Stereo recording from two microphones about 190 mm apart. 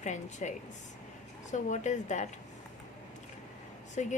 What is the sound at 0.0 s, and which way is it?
A woman's voice, 40° left (ahead or behind).